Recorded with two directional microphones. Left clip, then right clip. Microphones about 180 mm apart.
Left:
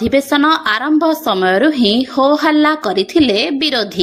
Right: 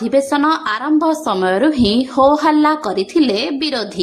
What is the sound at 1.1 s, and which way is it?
A woman's voice, 10° left (ahead or behind).